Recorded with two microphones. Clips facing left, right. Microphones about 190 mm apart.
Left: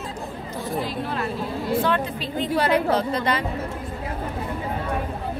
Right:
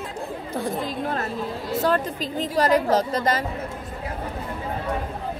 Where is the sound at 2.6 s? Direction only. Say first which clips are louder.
Right 2 dB; 40° right (ahead or behind).